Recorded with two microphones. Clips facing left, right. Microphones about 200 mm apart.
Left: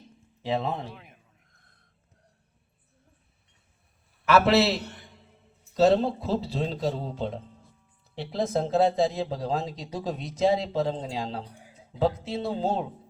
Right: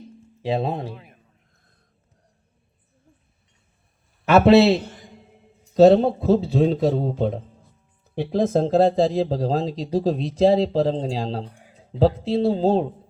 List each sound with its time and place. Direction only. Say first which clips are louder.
0.4 s speech: right 5 dB; 30° right (ahead or behind)
0.9 s a man's voice: right 7 dB; centre (ahead or behind)
5.7 s speech: right 8 dB; 55° right (ahead or behind)
8.6 s speech: right 3 dB; 35° right (ahead or behind)